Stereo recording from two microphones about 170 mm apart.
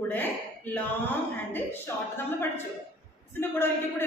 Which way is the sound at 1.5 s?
15° left (ahead or behind).